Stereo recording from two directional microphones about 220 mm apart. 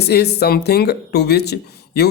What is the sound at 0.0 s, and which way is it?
Speech, 50° left (ahead or behind).